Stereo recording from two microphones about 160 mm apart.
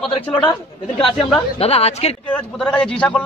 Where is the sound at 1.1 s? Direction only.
35° left (ahead or behind).